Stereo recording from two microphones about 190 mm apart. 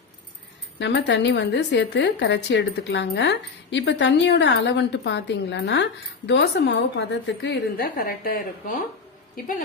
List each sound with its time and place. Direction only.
0.8 s a woman's voice: 70° left (ahead or behind); by 9.6 s 50° left (ahead or behind)